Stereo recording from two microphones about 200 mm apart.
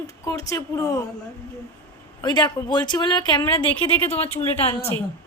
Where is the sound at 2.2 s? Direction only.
20° left (ahead or behind).